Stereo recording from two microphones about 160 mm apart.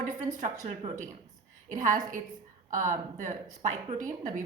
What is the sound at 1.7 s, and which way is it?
A woman's voice, 55° right (ahead or behind).